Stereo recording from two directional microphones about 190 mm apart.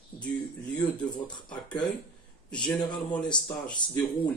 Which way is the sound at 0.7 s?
25° left (ahead or behind).